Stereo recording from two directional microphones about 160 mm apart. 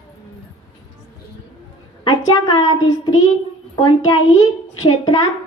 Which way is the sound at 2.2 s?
25° left (ahead or behind).